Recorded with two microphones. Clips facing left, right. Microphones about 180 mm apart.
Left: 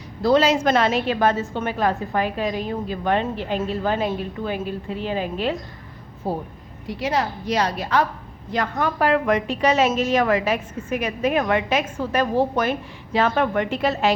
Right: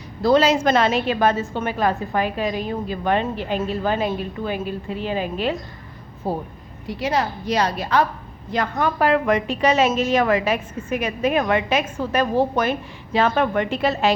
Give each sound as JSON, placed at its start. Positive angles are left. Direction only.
{"t": 0.2, "sound": "a woman's voice", "side_deg": -45}
{"t": 7.0, "sound": "a woman's voice", "side_deg": -40}